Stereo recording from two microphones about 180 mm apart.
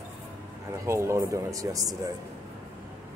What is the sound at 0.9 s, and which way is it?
Speech, 15° right (ahead or behind).